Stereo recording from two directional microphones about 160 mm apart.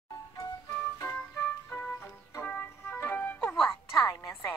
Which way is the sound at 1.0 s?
15° left (ahead or behind).